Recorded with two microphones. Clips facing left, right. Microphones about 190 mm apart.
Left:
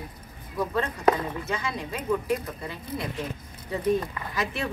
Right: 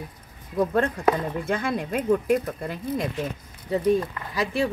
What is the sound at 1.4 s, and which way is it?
Speech, 55° right (ahead or behind).